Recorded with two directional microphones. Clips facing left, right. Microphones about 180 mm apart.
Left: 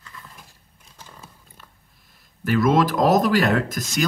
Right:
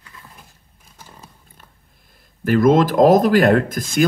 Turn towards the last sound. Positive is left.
turn(degrees=-50)  # may be behind; listen again after turning